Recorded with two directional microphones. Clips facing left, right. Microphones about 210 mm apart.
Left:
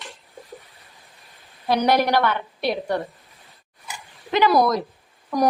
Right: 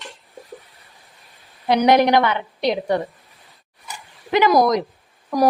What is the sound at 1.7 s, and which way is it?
A woman's voice, 20° right (ahead or behind).